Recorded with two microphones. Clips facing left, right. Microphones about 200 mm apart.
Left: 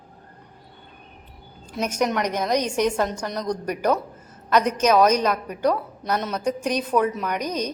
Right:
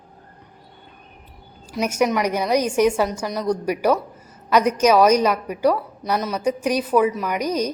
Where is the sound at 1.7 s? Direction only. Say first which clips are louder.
Right 3 dB; 10° right (ahead or behind).